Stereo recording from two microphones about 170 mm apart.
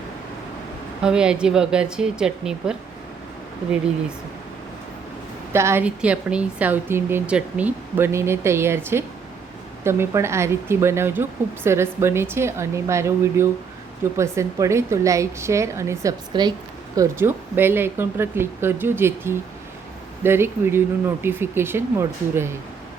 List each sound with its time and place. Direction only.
1.0 s a woman's voice: 5° right (ahead or behind)
5.5 s speech: 15° right (ahead or behind)